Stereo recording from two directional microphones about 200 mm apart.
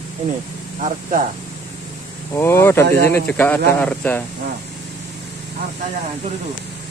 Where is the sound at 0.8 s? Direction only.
40° right (ahead or behind).